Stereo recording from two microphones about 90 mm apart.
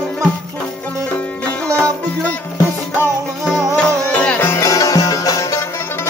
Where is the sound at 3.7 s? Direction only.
15° left (ahead or behind).